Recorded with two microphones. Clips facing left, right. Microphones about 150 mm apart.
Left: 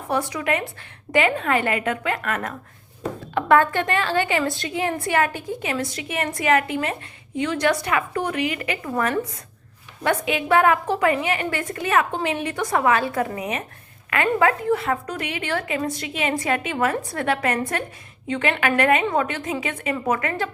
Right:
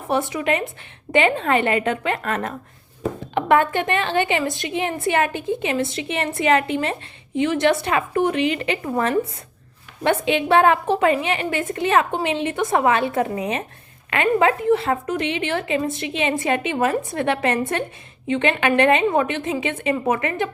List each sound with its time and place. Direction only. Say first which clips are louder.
0.1 s a woman's voice: right 2 dB; 25° right (ahead or behind)